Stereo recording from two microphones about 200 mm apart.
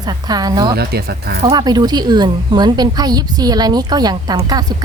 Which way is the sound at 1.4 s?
20° right (ahead or behind).